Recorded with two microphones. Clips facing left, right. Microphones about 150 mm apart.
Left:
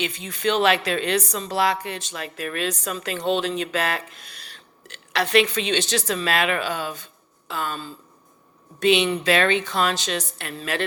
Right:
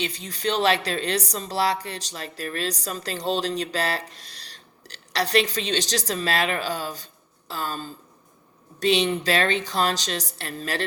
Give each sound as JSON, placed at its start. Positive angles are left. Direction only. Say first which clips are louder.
{"t": 0.0, "sound": "speech", "louder": "left 3 dB", "side_deg": -35}